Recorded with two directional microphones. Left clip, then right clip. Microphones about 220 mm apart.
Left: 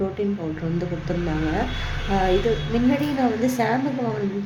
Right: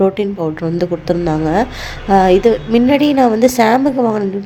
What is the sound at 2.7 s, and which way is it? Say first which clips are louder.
A woman's voice: right 11 dB; 40° right (ahead or behind).